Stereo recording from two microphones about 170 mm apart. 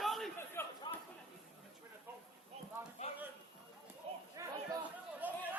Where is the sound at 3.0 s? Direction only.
35° left (ahead or behind).